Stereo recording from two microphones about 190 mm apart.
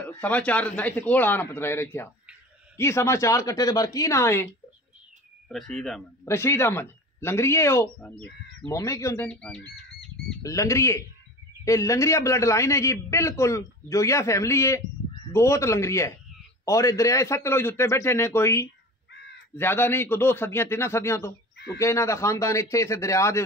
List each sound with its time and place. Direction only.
0.0 s a man's voice: 10° left (ahead or behind)
5.5 s speech: centre (ahead or behind)
6.2 s a man's voice: 15° left (ahead or behind)
10.4 s a man's voice: 15° left (ahead or behind)